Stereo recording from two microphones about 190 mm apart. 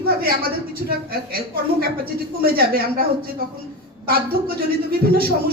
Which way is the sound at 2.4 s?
50° right (ahead or behind).